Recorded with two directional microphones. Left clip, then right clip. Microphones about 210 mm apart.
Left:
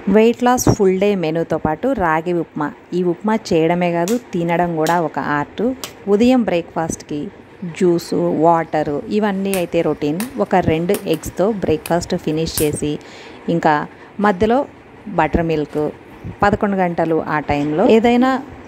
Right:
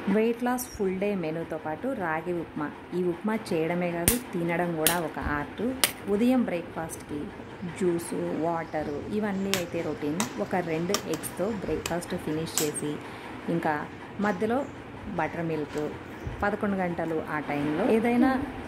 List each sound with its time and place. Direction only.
0.1 s a woman's voice: 40° left (ahead or behind)